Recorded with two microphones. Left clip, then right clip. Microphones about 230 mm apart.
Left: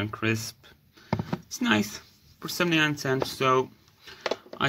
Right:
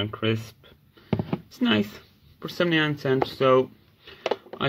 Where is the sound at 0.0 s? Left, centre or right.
Left.